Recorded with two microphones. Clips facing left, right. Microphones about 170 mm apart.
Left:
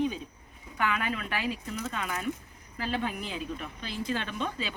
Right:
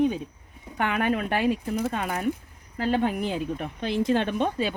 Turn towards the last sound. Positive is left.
turn(degrees=-55)  # may be behind; listen again after turning